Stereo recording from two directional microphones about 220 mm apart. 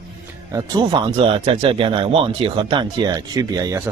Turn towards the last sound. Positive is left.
turn(degrees=-15)  # may be behind; listen again after turning